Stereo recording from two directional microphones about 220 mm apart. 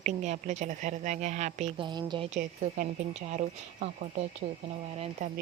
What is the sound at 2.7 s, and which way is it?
Speech, 35° right (ahead or behind).